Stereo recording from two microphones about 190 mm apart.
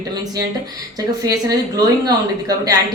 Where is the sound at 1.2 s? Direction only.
20° right (ahead or behind).